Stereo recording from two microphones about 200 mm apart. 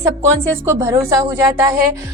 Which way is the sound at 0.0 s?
15° right (ahead or behind).